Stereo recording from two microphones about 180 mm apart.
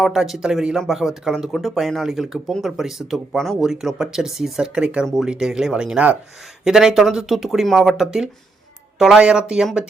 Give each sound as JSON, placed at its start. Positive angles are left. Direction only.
{"t": 0.0, "sound": "speech", "side_deg": -5}